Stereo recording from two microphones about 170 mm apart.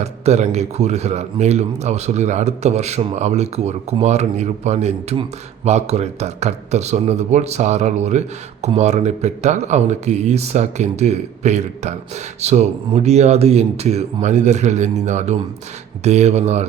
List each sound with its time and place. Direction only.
0.0 s speech: 40° right (ahead or behind)